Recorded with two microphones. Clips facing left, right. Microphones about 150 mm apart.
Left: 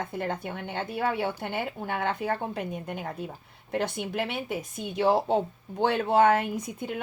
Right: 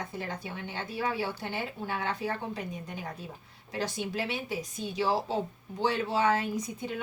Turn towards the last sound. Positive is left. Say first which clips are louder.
# left 1 dB
turn(degrees=55)  # may be behind; listen again after turning